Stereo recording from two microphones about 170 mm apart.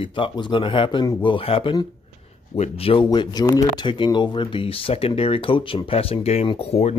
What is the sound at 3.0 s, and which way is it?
Speech, 25° left (ahead or behind).